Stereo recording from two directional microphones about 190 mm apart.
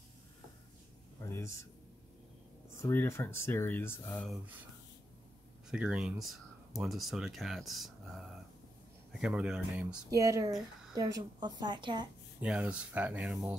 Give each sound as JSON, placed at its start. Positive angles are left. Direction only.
{"t": 1.3, "sound": "speech", "side_deg": 15}
{"t": 2.8, "sound": "speech", "side_deg": 10}
{"t": 5.7, "sound": "speech", "side_deg": -5}
{"t": 10.1, "sound": "a woman's voice", "side_deg": -15}
{"t": 12.4, "sound": "speech", "side_deg": -5}